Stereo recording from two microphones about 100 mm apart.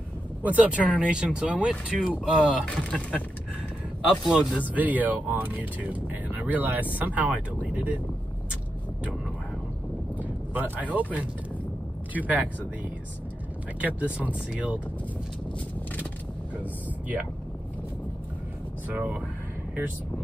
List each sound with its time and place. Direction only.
0.4 s speech: 15° right (ahead or behind)
2.6 s speech: 10° left (ahead or behind)
4.3 s speech: 10° right (ahead or behind)
10.1 s speech: 15° right (ahead or behind)
13.7 s speech: 15° right (ahead or behind)
18.9 s speech: 10° right (ahead or behind)